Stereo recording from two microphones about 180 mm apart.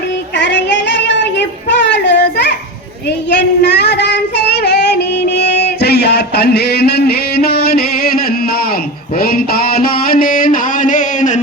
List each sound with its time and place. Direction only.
0.3 s child singing: 75° left (ahead or behind)
3.2 s female singing: 70° left (ahead or behind); by 11.3 s 45° left (ahead or behind)